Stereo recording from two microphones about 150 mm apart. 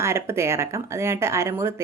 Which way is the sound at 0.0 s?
15° right (ahead or behind).